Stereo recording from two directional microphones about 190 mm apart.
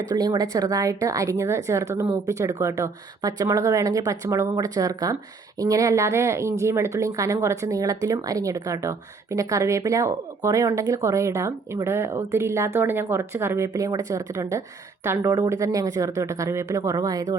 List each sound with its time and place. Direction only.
0.1 s speech: 20° right (ahead or behind)